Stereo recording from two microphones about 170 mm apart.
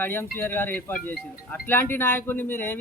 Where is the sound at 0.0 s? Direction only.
15° left (ahead or behind).